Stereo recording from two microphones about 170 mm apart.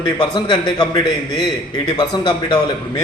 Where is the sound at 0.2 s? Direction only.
30° left (ahead or behind).